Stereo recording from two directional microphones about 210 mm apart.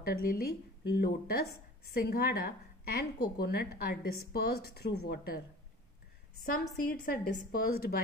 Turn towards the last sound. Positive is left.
turn(degrees=45)  # may be behind; listen again after turning